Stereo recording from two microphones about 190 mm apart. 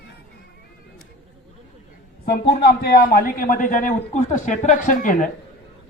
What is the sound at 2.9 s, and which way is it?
A man's voice, 50° left (ahead or behind).